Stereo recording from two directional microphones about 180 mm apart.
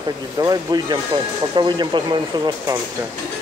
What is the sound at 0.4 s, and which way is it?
Speech, 20° right (ahead or behind).